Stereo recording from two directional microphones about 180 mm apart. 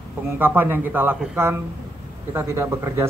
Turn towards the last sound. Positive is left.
turn(degrees=-15)  # may be behind; listen again after turning